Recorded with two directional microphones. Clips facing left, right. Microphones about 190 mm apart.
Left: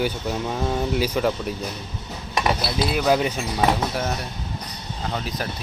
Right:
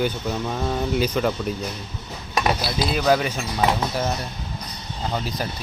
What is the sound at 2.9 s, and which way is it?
Speech, 10° left (ahead or behind).